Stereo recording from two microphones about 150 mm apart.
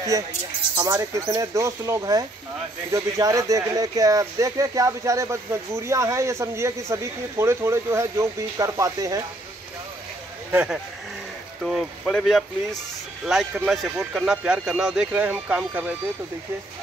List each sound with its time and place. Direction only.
0.8 s speech: 15° right (ahead or behind)
10.5 s speech: 5° right (ahead or behind)